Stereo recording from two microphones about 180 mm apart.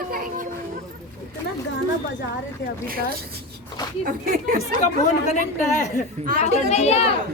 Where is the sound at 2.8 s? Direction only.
55° right (ahead or behind).